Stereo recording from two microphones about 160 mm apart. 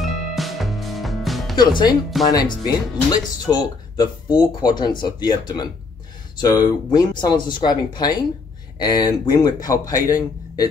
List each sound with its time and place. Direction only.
0.0 s music: centre (ahead or behind)
1.6 s speech: 25° left (ahead or behind)